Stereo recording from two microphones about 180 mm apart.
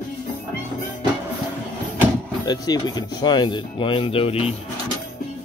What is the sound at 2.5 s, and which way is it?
Speech, 20° left (ahead or behind).